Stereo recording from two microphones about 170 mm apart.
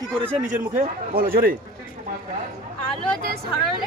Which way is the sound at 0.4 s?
50° right (ahead or behind).